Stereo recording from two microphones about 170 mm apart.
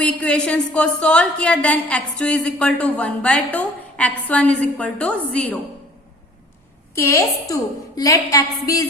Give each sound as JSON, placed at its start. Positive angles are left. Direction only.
{"t": 0.0, "sound": "a woman's voice", "side_deg": 5}
{"t": 6.9, "sound": "a woman's voice", "side_deg": 15}